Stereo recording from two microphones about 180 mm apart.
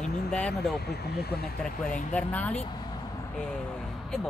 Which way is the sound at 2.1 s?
10° left (ahead or behind).